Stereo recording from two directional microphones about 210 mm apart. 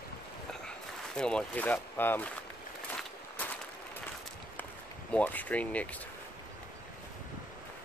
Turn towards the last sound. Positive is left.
turn(degrees=5)  # may be behind; listen again after turning